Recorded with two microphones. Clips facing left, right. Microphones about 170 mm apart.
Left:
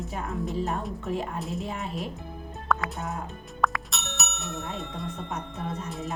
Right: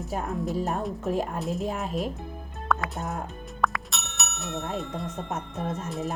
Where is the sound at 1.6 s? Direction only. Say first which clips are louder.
Right 4 dB; 45° right (ahead or behind).